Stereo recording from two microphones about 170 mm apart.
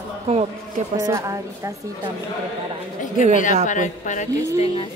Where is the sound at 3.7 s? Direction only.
45° left (ahead or behind).